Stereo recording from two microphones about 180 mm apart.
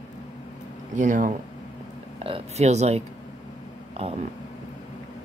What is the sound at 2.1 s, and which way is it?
Speech, 35° right (ahead or behind).